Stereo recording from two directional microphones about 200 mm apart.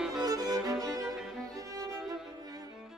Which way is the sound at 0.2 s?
20° right (ahead or behind).